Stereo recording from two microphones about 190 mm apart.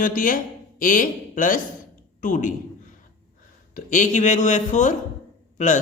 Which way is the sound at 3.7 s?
40° left (ahead or behind).